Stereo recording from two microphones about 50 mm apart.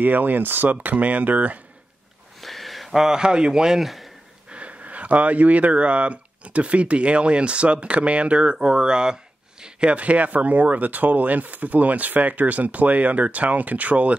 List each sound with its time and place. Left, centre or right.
0.0 s speech: right
2.4 s speech: centre
4.5 s speech: right